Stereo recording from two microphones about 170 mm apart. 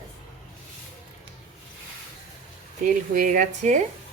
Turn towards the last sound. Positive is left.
turn(degrees=-45)  # may be behind; listen again after turning